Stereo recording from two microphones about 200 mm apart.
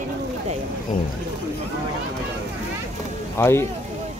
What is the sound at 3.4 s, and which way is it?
Speech, 10° left (ahead or behind).